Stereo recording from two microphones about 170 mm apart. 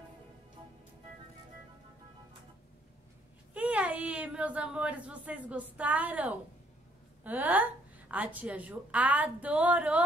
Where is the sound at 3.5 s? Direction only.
10° right (ahead or behind).